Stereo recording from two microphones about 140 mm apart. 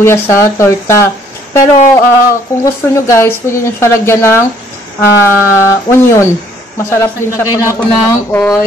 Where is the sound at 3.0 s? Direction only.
20° left (ahead or behind).